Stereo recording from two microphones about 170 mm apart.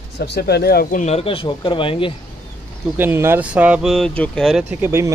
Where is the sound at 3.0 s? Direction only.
15° right (ahead or behind); by 4.6 s centre (ahead or behind).